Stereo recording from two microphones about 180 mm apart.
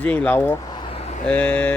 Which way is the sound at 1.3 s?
5° left (ahead or behind).